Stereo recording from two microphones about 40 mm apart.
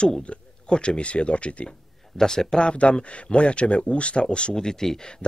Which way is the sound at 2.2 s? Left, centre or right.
Centre.